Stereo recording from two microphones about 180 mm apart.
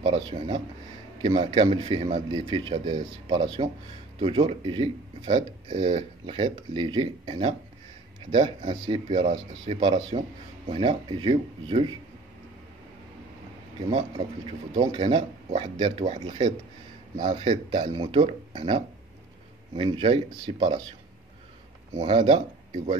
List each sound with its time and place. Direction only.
0.0 s speech: 30° right (ahead or behind)
13.8 s speech: 30° right (ahead or behind)
22.0 s speech: 30° right (ahead or behind)